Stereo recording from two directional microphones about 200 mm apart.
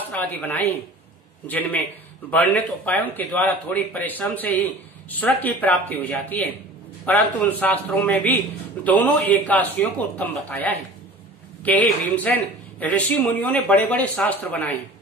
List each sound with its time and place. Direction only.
0.1 s speech: 10° left (ahead or behind)